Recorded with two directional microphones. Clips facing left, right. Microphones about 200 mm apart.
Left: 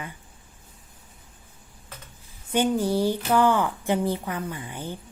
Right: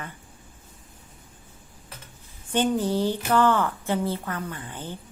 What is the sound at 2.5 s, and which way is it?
A woman's voice, 10° left (ahead or behind).